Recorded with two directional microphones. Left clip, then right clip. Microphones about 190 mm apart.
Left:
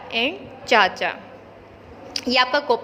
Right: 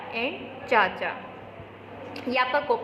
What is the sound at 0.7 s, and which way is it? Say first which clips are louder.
Speech: left 5 dB; 40° left (ahead or behind).